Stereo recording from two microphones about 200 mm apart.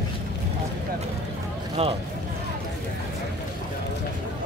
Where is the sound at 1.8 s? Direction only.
30° right (ahead or behind).